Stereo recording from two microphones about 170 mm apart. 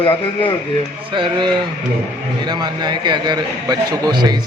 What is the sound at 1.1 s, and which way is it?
A man's voice, 25° right (ahead or behind).